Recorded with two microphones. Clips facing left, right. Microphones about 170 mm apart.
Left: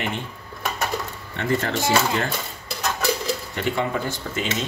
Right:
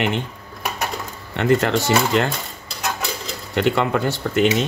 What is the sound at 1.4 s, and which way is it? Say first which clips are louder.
Speech: right 6 dB; 75° right (ahead or behind).